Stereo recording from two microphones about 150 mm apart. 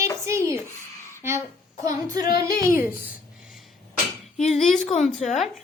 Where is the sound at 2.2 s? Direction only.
80° left.